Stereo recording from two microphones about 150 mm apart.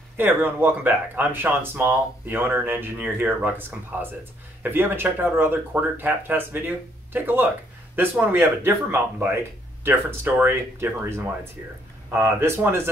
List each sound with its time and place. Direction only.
0.2 s speech: 15° right (ahead or behind)